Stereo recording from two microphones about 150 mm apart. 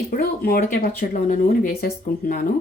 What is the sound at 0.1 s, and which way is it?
Speech, 75° left (ahead or behind).